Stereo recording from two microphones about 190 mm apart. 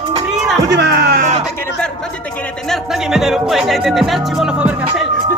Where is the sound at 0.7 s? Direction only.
60° right (ahead or behind).